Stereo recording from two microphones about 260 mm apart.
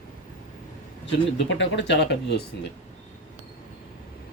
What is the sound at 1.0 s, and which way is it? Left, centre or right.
Speech, left.